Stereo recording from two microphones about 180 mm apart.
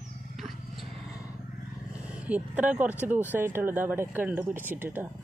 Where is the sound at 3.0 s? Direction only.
10° right (ahead or behind).